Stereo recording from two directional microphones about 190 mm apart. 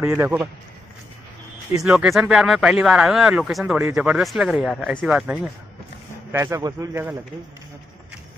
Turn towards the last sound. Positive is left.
turn(degrees=-15)  # may be behind; listen again after turning